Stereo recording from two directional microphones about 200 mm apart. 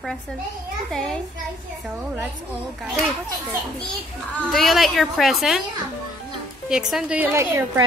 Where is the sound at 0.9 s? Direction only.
5° left (ahead or behind).